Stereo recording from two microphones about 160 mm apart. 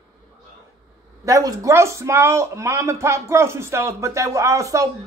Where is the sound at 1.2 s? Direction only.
20° right (ahead or behind).